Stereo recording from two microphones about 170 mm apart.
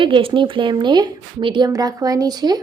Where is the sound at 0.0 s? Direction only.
30° right (ahead or behind).